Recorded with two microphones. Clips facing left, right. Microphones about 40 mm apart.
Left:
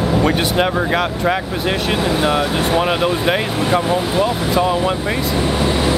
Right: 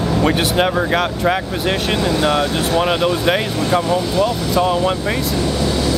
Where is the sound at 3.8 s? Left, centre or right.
Left.